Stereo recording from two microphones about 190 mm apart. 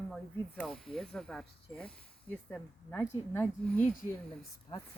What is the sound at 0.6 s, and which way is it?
Speech, centre (ahead or behind).